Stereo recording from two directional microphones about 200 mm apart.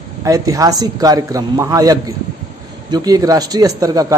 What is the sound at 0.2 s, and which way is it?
Speech, 15° right (ahead or behind).